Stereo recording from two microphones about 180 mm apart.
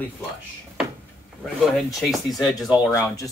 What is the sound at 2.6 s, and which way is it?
Speech, 20° left (ahead or behind).